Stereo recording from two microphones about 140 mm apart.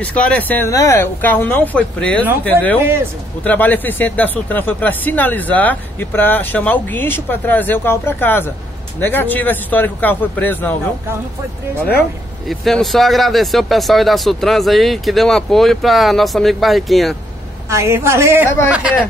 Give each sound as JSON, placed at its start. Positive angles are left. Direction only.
{"t": 0.0, "sound": "speech", "side_deg": 10}
{"t": 2.8, "sound": "speech", "side_deg": -15}
{"t": 3.4, "sound": "speech", "side_deg": 10}
{"t": 12.4, "sound": "speech", "side_deg": 0}
{"t": 17.6, "sound": "a woman's voice", "side_deg": -20}